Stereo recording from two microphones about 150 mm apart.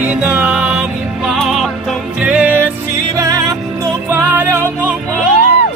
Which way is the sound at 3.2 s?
25° right (ahead or behind).